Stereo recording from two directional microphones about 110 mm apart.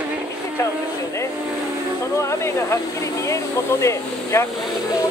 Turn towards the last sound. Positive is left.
turn(degrees=25)  # may be behind; listen again after turning